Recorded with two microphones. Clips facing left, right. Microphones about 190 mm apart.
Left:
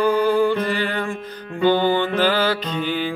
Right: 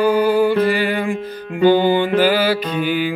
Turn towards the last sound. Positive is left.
turn(degrees=-10)  # may be behind; listen again after turning